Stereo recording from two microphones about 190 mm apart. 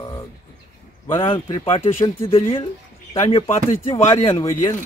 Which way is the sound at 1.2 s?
25° left (ahead or behind).